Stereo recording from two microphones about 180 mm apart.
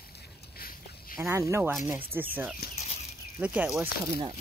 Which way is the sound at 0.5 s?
55° left (ahead or behind).